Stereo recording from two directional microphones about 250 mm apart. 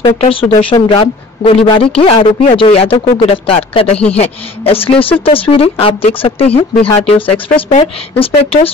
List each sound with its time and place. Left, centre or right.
0.0 s a woman's voice: left